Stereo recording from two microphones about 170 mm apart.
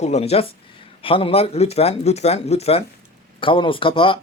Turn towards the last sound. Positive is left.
turn(degrees=30)  # may be behind; listen again after turning